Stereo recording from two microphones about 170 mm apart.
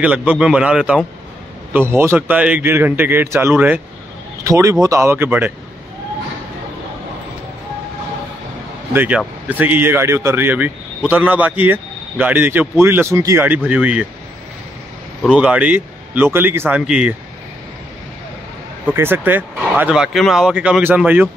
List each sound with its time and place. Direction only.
0.0 s a man's voice: 10° right (ahead or behind)
8.9 s a man's voice: 10° right (ahead or behind)
15.2 s a man's voice: 5° right (ahead or behind)
18.9 s a man's voice: 10° right (ahead or behind)